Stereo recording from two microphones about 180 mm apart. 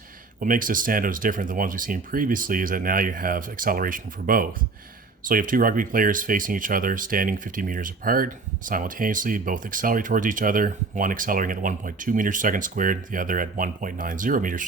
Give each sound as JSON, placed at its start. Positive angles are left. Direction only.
{"t": 0.3, "sound": "speech", "side_deg": -50}